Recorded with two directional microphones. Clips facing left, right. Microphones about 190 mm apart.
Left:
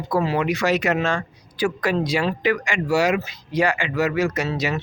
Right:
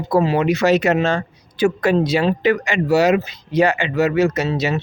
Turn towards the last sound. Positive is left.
turn(degrees=-25)  # may be behind; listen again after turning